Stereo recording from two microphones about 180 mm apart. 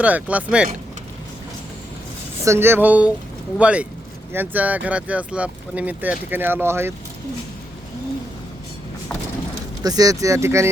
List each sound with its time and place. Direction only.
0.0 s speech: 10° right (ahead or behind)
2.4 s speech: 15° right (ahead or behind)
9.8 s speech: 20° right (ahead or behind)